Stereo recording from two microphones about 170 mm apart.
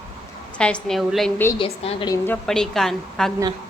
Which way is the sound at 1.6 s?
35° left (ahead or behind).